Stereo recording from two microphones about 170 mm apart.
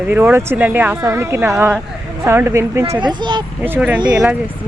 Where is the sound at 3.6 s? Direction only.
5° right (ahead or behind).